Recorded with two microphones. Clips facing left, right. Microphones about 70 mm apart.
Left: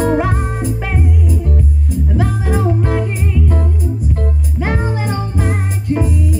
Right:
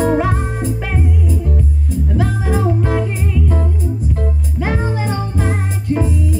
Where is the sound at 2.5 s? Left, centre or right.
Centre.